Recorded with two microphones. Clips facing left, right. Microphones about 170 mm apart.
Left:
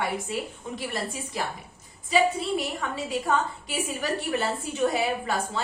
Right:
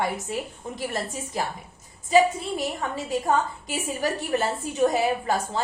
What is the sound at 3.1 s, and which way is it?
A woman's voice, 40° right (ahead or behind).